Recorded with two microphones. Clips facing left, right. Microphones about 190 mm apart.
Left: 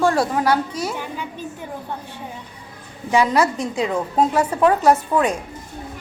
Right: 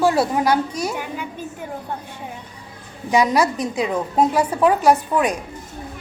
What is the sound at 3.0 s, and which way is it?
A woman's voice, 15° right (ahead or behind).